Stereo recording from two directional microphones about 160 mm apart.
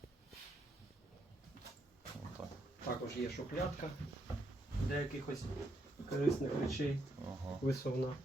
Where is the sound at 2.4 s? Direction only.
10° right (ahead or behind).